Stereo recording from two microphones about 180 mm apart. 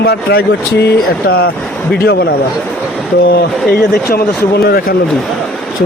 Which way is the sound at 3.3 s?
55° left (ahead or behind).